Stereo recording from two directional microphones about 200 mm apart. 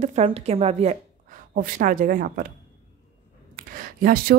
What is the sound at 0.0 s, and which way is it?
A woman's voice, 30° right (ahead or behind).